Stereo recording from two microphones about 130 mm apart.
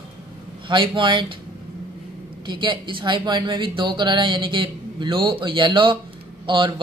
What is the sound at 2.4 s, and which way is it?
Speech, 35° right (ahead or behind).